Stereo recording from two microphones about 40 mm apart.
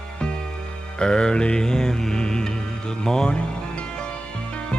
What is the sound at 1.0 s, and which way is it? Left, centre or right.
Mantra, centre.